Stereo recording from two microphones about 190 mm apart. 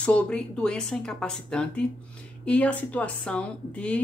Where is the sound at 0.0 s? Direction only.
5° left (ahead or behind).